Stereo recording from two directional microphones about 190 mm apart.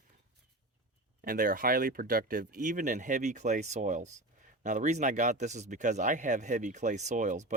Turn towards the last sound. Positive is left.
turn(degrees=-40)  # may be behind; listen again after turning